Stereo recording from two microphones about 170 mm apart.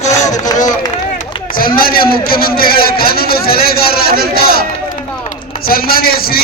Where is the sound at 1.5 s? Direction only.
60° left (ahead or behind).